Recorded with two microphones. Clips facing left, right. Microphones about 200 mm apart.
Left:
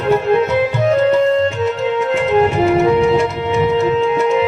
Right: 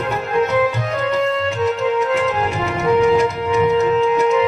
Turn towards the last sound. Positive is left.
turn(degrees=35)  # may be behind; listen again after turning